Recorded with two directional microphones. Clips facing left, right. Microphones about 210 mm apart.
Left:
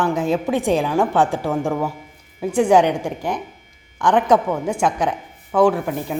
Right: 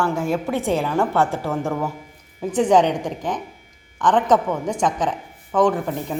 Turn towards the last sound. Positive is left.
turn(degrees=10)  # may be behind; listen again after turning